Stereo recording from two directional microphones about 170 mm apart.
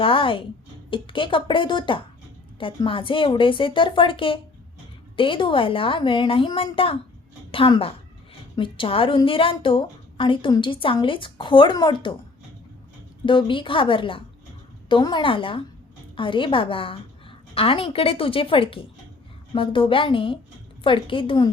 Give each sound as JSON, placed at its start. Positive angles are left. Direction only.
{"t": 0.0, "sound": "a woman's voice", "side_deg": 30}
{"t": 13.2, "sound": "a woman's voice", "side_deg": 30}